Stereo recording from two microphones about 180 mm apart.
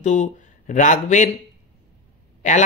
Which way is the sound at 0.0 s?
40° left (ahead or behind).